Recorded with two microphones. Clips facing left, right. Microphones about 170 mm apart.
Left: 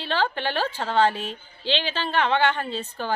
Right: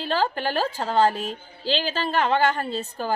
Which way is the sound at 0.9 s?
40° right (ahead or behind).